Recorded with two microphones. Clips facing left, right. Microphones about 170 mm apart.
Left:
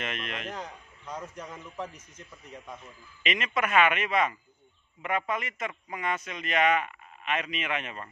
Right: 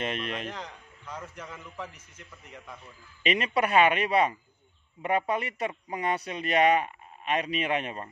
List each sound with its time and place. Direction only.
0.0 s a man's voice: 35° right (ahead or behind)
0.5 s a man's voice: 10° left (ahead or behind)
3.3 s a man's voice: 35° right (ahead or behind)